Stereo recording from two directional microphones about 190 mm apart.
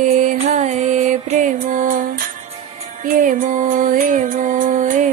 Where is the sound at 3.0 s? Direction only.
45° right (ahead or behind).